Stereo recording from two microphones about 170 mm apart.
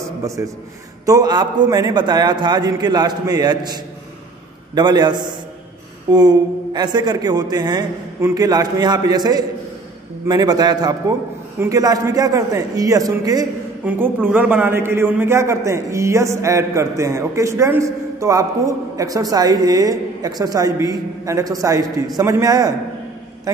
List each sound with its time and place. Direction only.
0.2 s a man's voice: 15° right (ahead or behind)
13.8 s a man's voice: 10° right (ahead or behind)